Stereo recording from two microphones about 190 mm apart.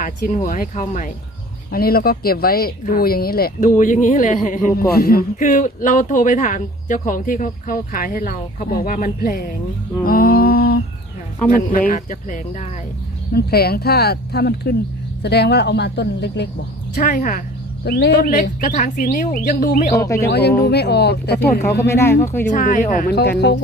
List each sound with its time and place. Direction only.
0.0 s speech: 45° left (ahead or behind)
3.8 s speech: 40° left (ahead or behind)
10.0 s a sound: 50° left (ahead or behind)
11.4 s speech: 45° left (ahead or behind)
13.3 s speech: 55° left (ahead or behind)
16.9 s speech: 45° left (ahead or behind)
17.8 s speech: 60° left (ahead or behind)
19.9 s speech: 15° left (ahead or behind)
20.2 s speech: 60° left (ahead or behind)
21.3 s speech: 10° left (ahead or behind)
22.4 s speech: 45° left (ahead or behind)